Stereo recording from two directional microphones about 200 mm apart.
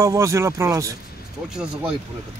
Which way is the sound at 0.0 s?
15° right (ahead or behind).